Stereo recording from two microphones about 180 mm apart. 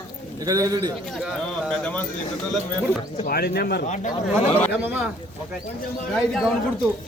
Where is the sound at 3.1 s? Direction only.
55° left (ahead or behind).